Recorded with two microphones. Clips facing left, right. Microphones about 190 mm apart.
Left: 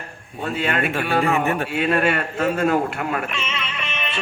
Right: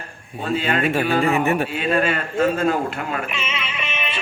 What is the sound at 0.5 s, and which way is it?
Speech, 60° left (ahead or behind).